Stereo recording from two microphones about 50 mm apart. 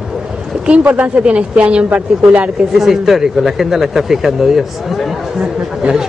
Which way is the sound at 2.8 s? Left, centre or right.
Centre.